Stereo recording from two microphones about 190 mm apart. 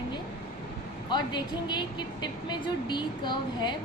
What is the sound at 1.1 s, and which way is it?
A woman's voice, 25° left (ahead or behind).